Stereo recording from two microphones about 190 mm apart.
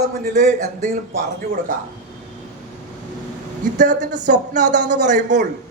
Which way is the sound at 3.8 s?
40° right (ahead or behind).